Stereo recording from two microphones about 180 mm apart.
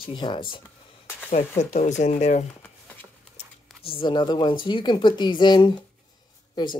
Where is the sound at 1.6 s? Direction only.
40° left (ahead or behind).